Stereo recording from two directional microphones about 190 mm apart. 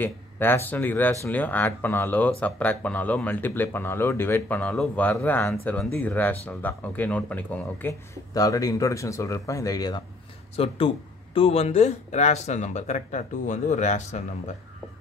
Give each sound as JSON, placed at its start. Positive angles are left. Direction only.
{"t": 0.0, "sound": "speech", "side_deg": 10}
{"t": 10.5, "sound": "speech", "side_deg": 30}